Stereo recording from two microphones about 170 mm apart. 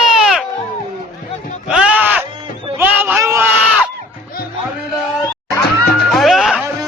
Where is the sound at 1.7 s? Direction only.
5° right (ahead or behind).